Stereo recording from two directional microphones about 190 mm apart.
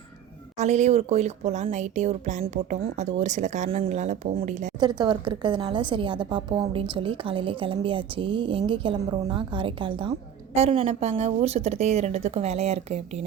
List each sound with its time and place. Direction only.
0.6 s speech: 35° right (ahead or behind)
4.8 s a woman's voice: 20° right (ahead or behind)